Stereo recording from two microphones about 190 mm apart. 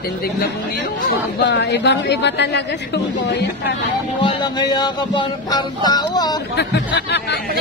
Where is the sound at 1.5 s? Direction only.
65° left (ahead or behind).